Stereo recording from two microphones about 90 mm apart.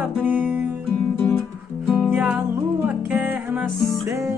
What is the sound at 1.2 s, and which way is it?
Music, 25° left (ahead or behind).